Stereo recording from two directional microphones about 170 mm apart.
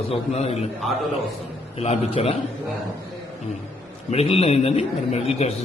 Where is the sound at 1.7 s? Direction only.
35° left (ahead or behind).